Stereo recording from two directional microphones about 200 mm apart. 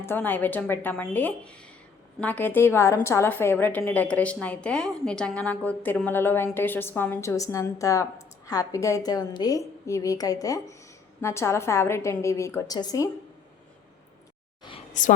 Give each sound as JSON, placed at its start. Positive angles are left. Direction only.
{"t": 0.0, "sound": "a woman's voice", "side_deg": 10}
{"t": 15.0, "sound": "a woman's voice", "side_deg": 40}